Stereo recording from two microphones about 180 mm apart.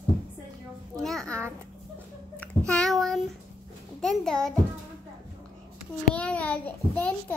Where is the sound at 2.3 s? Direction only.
5° left (ahead or behind).